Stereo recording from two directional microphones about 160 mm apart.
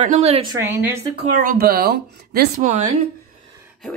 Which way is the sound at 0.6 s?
15° right (ahead or behind).